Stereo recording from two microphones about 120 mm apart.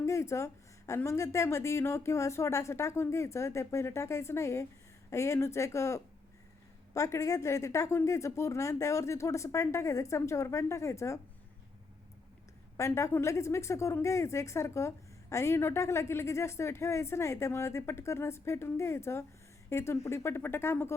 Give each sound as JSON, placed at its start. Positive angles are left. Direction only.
{"t": 0.0, "sound": "a woman's voice", "side_deg": 25}
{"t": 12.7, "sound": "a woman's voice", "side_deg": 25}